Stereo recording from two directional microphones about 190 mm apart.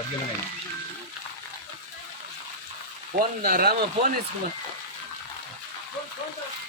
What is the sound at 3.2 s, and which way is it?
Speech, 50° right (ahead or behind).